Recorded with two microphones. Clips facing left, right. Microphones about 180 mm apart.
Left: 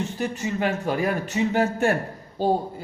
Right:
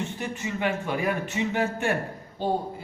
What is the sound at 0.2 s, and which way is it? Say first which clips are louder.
Speech: left 5 dB; 35° left (ahead or behind).